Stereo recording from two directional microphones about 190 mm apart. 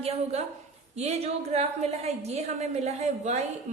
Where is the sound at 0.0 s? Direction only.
35° right (ahead or behind).